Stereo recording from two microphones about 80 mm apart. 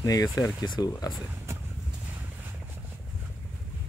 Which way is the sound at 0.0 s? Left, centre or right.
Left.